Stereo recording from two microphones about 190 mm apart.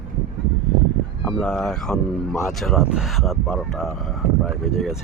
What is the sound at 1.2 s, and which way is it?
Speech, 5° left (ahead or behind).